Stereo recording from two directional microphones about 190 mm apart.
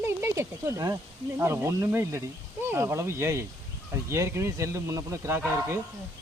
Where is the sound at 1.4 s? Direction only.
15° right (ahead or behind).